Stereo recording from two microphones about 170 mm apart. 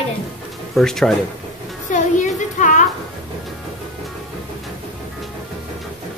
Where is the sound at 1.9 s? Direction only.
50° left (ahead or behind).